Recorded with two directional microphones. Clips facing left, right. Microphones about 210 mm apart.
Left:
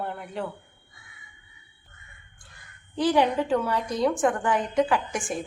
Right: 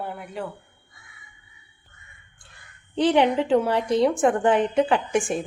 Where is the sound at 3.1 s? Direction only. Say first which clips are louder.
Right 3 dB; 25° right (ahead or behind).